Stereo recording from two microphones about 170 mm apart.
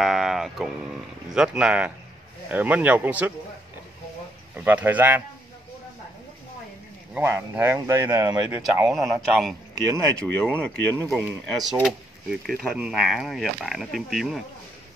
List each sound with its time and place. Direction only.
0.0 s speech: centre (ahead or behind)
4.6 s speech: 10° right (ahead or behind)
7.2 s speech: 15° right (ahead or behind)
8.8 s speech: centre (ahead or behind)
10.6 s speech: 5° left (ahead or behind)